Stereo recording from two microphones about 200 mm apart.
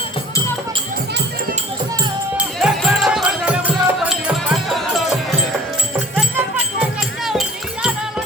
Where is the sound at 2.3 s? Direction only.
Centre (ahead or behind).